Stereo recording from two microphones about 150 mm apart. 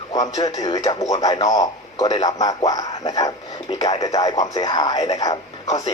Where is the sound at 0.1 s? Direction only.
25° left (ahead or behind).